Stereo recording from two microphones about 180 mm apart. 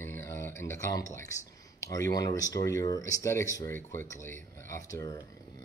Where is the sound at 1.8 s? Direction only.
20° left (ahead or behind).